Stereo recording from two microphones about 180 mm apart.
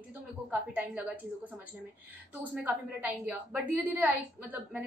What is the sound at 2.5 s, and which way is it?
A woman's voice, 10° right (ahead or behind).